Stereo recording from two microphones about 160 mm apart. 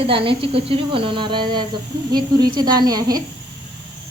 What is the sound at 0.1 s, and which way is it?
Speech, 35° right (ahead or behind).